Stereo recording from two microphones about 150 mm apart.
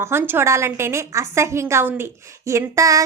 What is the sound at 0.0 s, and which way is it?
A woman's voice, 15° right (ahead or behind).